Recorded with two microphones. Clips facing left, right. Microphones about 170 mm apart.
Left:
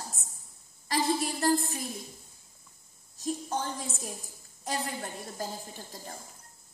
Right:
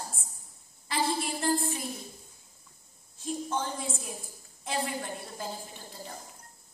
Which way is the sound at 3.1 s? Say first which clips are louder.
Even; 45° left (ahead or behind).